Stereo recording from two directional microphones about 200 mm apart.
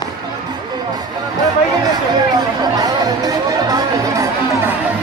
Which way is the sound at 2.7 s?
20° right (ahead or behind).